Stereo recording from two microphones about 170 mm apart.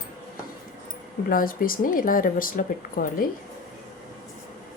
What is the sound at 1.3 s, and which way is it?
Speech, 55° left (ahead or behind).